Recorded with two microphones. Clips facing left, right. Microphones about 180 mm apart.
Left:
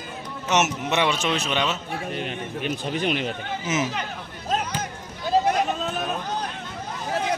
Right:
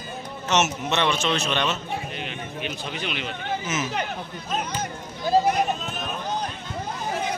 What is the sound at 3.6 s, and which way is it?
Speech, 15° left (ahead or behind).